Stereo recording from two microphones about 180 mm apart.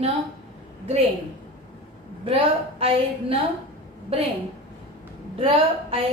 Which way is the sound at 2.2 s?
30° right (ahead or behind).